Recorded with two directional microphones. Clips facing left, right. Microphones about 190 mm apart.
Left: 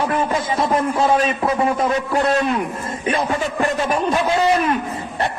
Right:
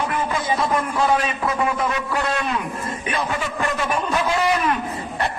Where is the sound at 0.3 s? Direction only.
25° left (ahead or behind).